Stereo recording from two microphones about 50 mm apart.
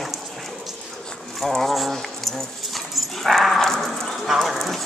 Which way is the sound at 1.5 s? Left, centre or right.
Centre.